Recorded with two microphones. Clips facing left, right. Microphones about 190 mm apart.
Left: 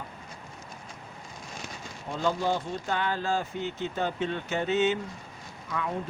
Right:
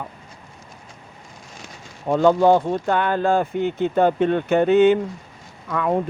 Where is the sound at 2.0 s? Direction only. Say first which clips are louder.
Right 13 dB; 60° right (ahead or behind).